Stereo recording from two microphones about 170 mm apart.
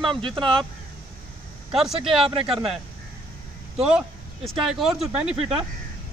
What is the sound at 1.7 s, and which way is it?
Speech, centre (ahead or behind).